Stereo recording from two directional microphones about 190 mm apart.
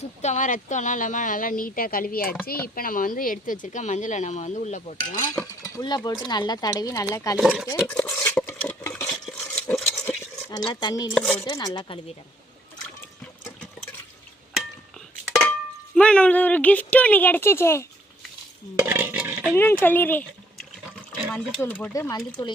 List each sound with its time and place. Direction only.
0.2 s a woman's voice: 40° left (ahead or behind)
5.6 s speech: 20° left (ahead or behind)
7.3 s speech: centre (ahead or behind)
7.7 s stir: 15° left (ahead or behind)
9.4 s a sound: 5° left (ahead or behind)
10.7 s speech: 25° left (ahead or behind)
11.1 s speech: centre (ahead or behind)
11.3 s speech: 20° left (ahead or behind)
16.0 s speech: 5° left (ahead or behind)
18.9 s stir: 10° right (ahead or behind)
19.5 s speech: 10° left (ahead or behind)
21.9 s speech: 20° left (ahead or behind)